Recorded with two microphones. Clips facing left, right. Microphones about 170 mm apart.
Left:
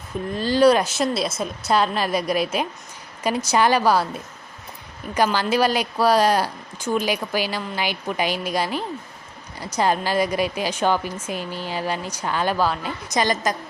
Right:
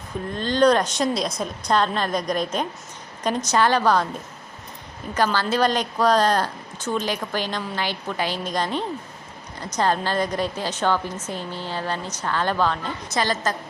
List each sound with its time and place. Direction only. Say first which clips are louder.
0.3 s a woman's voice: left 2 dB; 5° left (ahead or behind)